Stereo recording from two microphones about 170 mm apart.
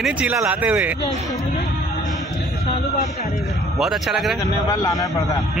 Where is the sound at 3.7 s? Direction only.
Centre (ahead or behind).